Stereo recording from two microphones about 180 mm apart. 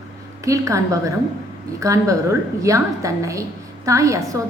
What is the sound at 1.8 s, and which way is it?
A woman's voice, 15° right (ahead or behind).